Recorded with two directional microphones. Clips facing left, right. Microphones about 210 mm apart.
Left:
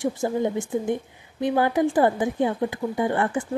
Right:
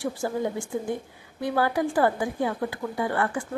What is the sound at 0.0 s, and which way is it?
A woman's voice, 20° left (ahead or behind).